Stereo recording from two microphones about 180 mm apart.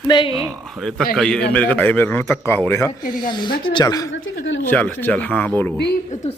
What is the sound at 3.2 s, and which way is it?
A woman's voice, 25° left (ahead or behind).